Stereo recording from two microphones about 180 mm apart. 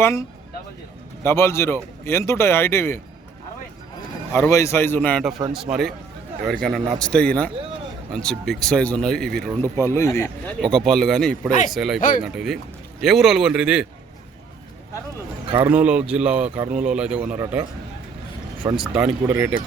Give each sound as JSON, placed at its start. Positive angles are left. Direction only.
{"t": 0.0, "sound": "speech", "side_deg": 15}
{"t": 4.3, "sound": "speech", "side_deg": 15}
{"t": 6.4, "sound": "speech", "side_deg": 5}
{"t": 9.6, "sound": "speech", "side_deg": 15}
{"t": 11.9, "sound": "speech", "side_deg": 50}
{"t": 12.2, "sound": "speech", "side_deg": 0}
{"t": 15.6, "sound": "speech", "side_deg": -10}
{"t": 18.8, "sound": "speech", "side_deg": -5}